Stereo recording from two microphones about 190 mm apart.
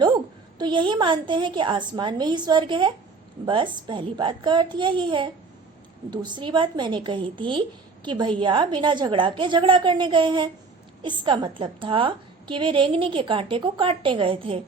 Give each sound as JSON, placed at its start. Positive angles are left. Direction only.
{"t": 0.6, "sound": "a woman's voice", "side_deg": -25}